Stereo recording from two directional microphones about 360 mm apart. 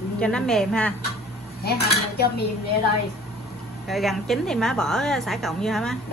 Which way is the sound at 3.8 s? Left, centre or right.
Centre.